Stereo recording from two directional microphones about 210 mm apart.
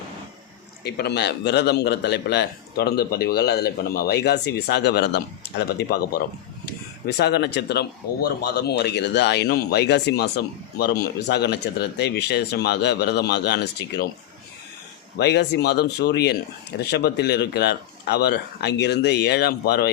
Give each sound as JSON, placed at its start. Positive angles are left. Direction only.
{"t": 0.9, "sound": "a man's voice", "side_deg": 50}
{"t": 15.2, "sound": "a man's voice", "side_deg": 55}